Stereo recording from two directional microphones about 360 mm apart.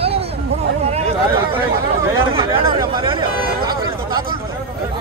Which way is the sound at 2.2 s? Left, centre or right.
Centre.